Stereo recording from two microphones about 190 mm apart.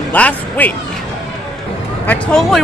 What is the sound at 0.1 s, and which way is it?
Speech, 10° left (ahead or behind).